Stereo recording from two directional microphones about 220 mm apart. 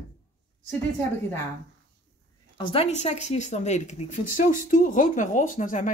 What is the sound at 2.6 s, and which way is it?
A woman's voice, 25° left (ahead or behind).